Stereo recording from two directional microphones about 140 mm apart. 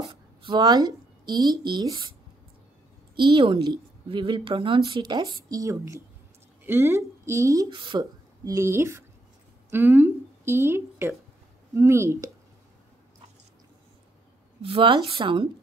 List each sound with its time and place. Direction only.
0.0 s speech: 35° right (ahead or behind)
3.2 s a woman's voice: 35° right (ahead or behind)
7.7 s a woman's voice: 35° right (ahead or behind)
8.5 s a woman's voice: 20° right (ahead or behind)
14.6 s a woman's voice: 40° right (ahead or behind)